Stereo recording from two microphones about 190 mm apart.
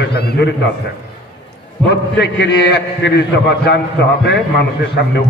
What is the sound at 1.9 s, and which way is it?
A man's voice, 65° left (ahead or behind).